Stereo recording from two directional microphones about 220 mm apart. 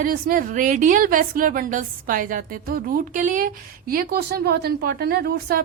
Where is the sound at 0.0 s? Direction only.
40° right (ahead or behind).